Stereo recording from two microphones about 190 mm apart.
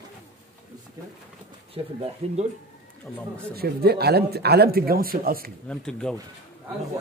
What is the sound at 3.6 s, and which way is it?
Speech, 55° right (ahead or behind).